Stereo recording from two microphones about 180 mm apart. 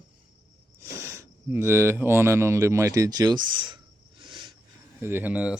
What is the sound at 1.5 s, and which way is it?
Speech, 15° right (ahead or behind).